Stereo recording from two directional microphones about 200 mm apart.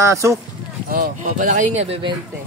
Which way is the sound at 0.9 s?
40° right (ahead or behind).